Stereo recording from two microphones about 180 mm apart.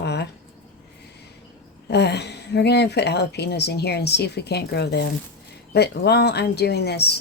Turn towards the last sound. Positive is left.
turn(degrees=65)  # may be behind; listen again after turning